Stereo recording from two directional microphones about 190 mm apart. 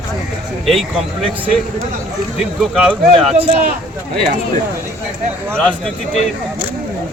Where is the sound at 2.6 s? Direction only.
Centre (ahead or behind).